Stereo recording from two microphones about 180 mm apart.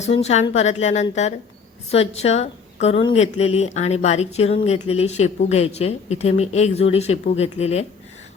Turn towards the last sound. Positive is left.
turn(degrees=35)  # may be behind; listen again after turning